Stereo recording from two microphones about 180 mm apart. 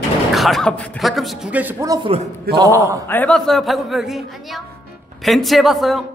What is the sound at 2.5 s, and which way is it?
Speech, 15° right (ahead or behind).